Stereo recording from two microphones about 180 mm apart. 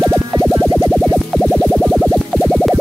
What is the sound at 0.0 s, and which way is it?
Music, 15° right (ahead or behind).